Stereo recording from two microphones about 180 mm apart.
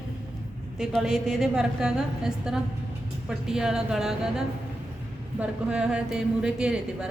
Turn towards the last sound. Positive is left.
turn(degrees=-5)  # may be behind; listen again after turning